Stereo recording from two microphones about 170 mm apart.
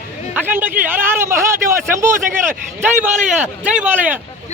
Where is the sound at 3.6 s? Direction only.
10° right (ahead or behind).